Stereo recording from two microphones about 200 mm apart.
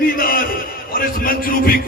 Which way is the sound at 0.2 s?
45° left (ahead or behind).